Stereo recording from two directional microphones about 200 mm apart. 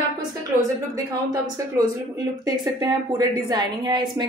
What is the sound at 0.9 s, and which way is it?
A woman's voice, 15° right (ahead or behind).